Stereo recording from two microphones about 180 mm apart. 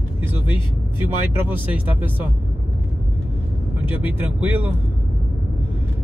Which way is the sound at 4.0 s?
10° right (ahead or behind).